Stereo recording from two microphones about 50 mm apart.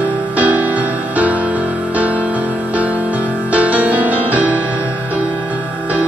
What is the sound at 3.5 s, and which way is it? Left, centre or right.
Music, right.